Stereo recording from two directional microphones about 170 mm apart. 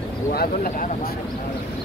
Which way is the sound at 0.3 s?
65° left (ahead or behind).